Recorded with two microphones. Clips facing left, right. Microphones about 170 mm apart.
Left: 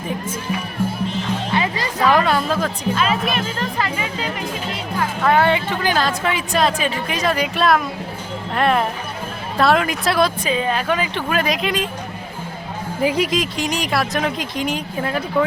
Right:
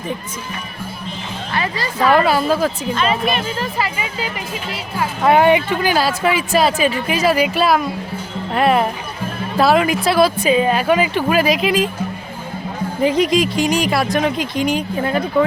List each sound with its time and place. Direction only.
1.5 s music: 20° left (ahead or behind)
2.0 s speech: 5° right (ahead or behind)
13.0 s speech: 5° left (ahead or behind)